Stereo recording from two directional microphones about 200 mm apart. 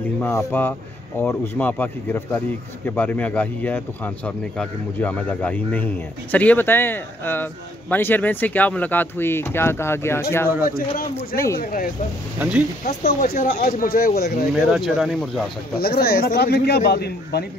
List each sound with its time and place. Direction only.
0.2 s speech: 10° left (ahead or behind)
11.6 s a man's voice: 45° left (ahead or behind)
12.4 s speech: 5° right (ahead or behind)
12.8 s a man's voice: 45° left (ahead or behind)
14.5 s speech: centre (ahead or behind)
15.8 s a man's voice: 50° left (ahead or behind)